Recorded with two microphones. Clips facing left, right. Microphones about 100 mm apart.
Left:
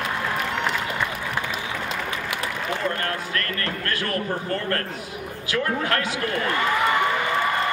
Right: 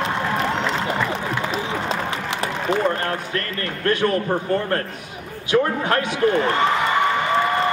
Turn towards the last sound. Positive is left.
turn(degrees=-25)  # may be behind; listen again after turning